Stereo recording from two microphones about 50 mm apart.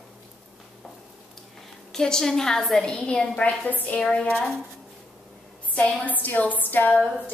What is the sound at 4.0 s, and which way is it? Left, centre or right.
Speech, centre.